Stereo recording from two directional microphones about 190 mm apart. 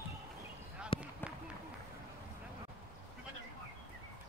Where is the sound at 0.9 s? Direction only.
30° left (ahead or behind).